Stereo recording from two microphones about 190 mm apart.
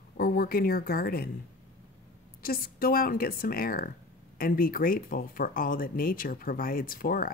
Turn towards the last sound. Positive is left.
turn(degrees=50)  # may be behind; listen again after turning